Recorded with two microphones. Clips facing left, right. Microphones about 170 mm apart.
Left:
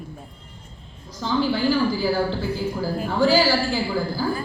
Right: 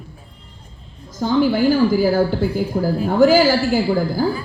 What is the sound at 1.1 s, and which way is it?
A woman's voice, 45° right (ahead or behind).